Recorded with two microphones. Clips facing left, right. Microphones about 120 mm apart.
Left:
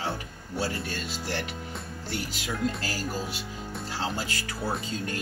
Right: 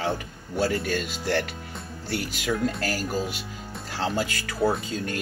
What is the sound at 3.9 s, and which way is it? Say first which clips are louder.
Speech: right 6 dB; 55° right (ahead or behind).